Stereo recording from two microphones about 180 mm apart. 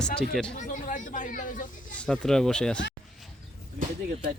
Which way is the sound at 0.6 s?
45° left (ahead or behind).